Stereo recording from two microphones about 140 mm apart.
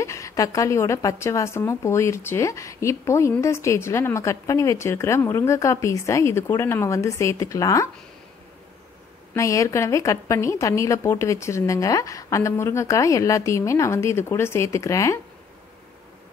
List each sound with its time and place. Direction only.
0.0 s a woman's voice: 20° left (ahead or behind)
9.3 s speech: 20° left (ahead or behind)